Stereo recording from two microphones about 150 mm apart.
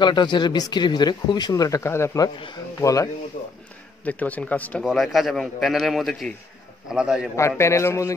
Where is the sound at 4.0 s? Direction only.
10° left (ahead or behind).